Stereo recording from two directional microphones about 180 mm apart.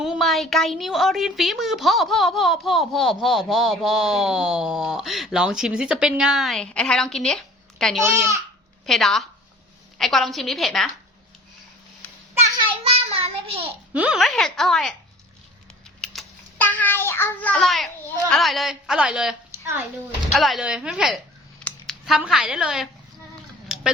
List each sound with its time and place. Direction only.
0.0 s a woman's voice: centre (ahead or behind)
12.6 s child singing: 30° right (ahead or behind)
13.9 s a woman's voice: 5° right (ahead or behind)
16.0 s a sound: 5° left (ahead or behind)
18.3 s a woman's voice: centre (ahead or behind)
23.6 s a sound: centre (ahead or behind)